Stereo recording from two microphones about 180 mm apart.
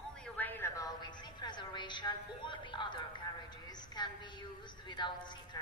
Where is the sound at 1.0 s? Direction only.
25° left (ahead or behind).